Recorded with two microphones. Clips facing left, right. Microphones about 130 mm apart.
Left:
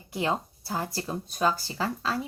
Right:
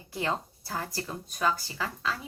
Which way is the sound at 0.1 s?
20° left (ahead or behind).